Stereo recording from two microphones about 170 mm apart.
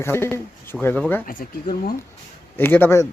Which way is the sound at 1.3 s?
55° left (ahead or behind).